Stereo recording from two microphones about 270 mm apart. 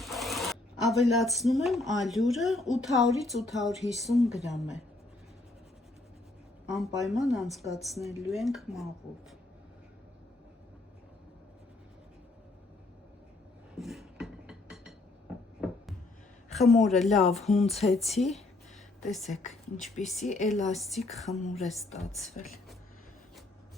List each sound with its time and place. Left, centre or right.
0.0 s a woman's voice: centre
6.7 s a woman's voice: centre
13.7 s a sound: centre
16.5 s a woman's voice: centre
17.7 s speech: left
18.2 s a woman's voice: centre
20.2 s speech: left
20.7 s a woman's voice: centre